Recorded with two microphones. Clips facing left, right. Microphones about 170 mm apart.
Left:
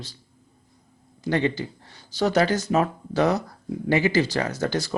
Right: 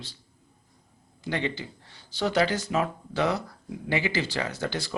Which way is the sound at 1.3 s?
45° left (ahead or behind).